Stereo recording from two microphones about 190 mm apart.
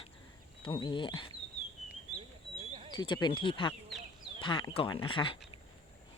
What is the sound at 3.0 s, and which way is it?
Speech, 25° left (ahead or behind).